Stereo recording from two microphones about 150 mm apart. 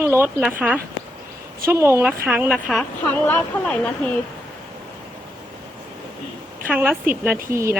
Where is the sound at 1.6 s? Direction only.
20° right (ahead or behind).